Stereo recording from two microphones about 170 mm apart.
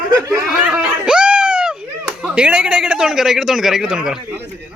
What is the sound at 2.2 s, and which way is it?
A man's voice, 5° right (ahead or behind).